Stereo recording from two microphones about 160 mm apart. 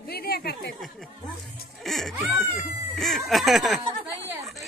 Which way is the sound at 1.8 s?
Centre (ahead or behind).